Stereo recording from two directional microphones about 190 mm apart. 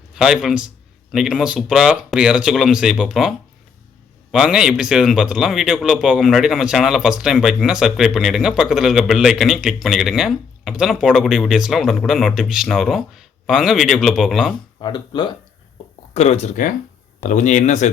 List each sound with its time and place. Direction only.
0.1 s a man's voice: 5° right (ahead or behind)
14.8 s speech: 25° left (ahead or behind)
16.1 s speech: 35° left (ahead or behind)